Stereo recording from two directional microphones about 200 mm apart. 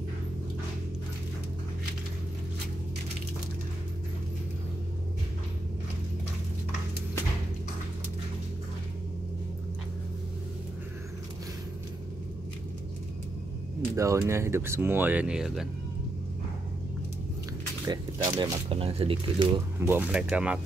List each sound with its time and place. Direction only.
13.9 s speech: 15° right (ahead or behind)
17.8 s speech: 20° right (ahead or behind)
19.8 s speech: 10° right (ahead or behind)